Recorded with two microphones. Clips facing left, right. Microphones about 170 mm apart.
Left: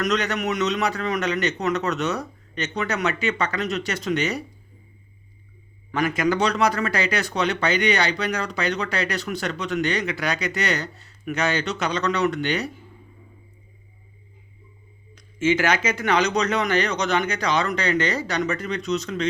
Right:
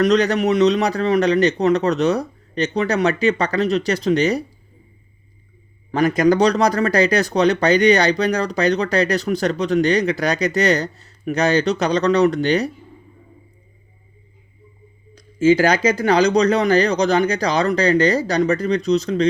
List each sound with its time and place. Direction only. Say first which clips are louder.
0.0 s speech: right 8 dB; 35° right (ahead or behind)
5.9 s speech: right 7 dB; 35° right (ahead or behind)
15.1 s speech: right 7 dB; 35° right (ahead or behind)